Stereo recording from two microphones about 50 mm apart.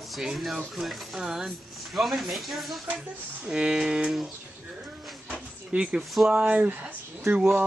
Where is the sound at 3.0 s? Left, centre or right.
Centre.